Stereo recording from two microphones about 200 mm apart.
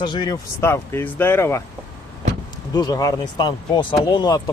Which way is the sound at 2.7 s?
20° left (ahead or behind).